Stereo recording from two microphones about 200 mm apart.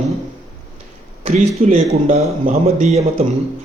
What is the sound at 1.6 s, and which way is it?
A man's voice, 40° right (ahead or behind).